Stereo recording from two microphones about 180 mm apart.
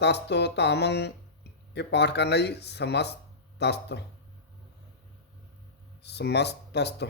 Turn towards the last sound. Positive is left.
turn(degrees=70)  # may be behind; listen again after turning